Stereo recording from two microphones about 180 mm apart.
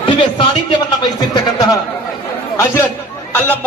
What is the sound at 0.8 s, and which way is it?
Speech, 20° left (ahead or behind).